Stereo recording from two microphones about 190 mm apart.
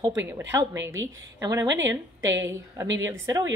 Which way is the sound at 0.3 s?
15° right (ahead or behind).